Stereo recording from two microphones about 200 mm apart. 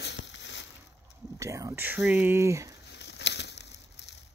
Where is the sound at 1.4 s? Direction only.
15° right (ahead or behind).